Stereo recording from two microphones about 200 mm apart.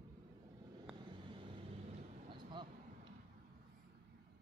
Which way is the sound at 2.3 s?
25° right (ahead or behind).